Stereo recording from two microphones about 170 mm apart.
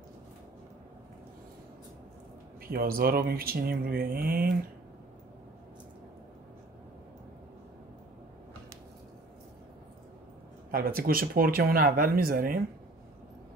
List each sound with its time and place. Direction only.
2.6 s speech: 60° right (ahead or behind)
10.7 s speech: 60° right (ahead or behind)